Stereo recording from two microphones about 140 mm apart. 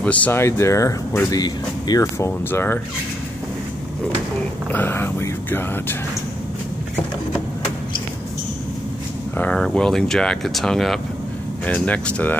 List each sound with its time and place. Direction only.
0.0 s speech: 10° left (ahead or behind)
4.7 s speech: 15° left (ahead or behind)
9.4 s speech: 5° left (ahead or behind)